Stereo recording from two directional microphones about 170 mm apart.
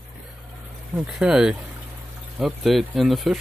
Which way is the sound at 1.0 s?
5° right (ahead or behind).